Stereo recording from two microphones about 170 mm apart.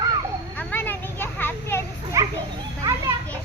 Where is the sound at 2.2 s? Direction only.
20° right (ahead or behind).